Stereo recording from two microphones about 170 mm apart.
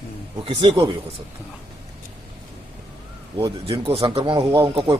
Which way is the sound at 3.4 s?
30° right (ahead or behind).